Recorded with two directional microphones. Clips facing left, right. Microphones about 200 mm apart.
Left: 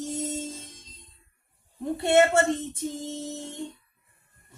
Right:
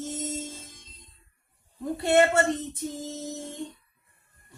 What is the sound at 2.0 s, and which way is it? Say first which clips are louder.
Speech: left 1 dB; 25° left (ahead or behind).